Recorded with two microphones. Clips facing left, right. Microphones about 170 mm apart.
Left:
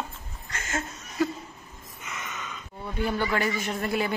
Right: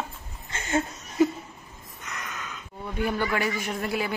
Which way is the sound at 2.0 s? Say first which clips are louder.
Even; centre (ahead or behind).